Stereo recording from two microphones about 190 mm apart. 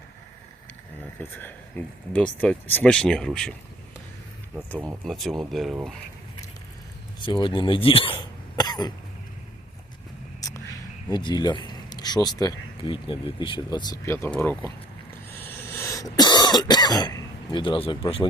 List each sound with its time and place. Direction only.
1.2 s speech: 10° left (ahead or behind)
5.0 s speech: centre (ahead or behind)
7.3 s speech: 25° left (ahead or behind)
11.1 s speech: 25° left (ahead or behind)
15.4 s cough: 15° left (ahead or behind); by 18.3 s 30° left (ahead or behind)